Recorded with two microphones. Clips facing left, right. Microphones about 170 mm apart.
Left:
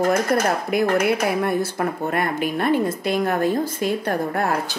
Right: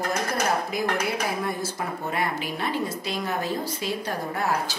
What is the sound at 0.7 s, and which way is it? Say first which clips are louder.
A woman's voice: left 7 dB; 60° left (ahead or behind).